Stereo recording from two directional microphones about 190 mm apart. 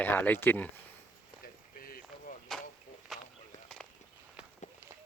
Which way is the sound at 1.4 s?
50° left (ahead or behind).